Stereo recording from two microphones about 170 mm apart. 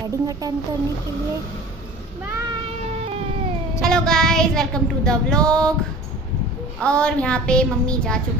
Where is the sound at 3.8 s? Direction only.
5° left (ahead or behind).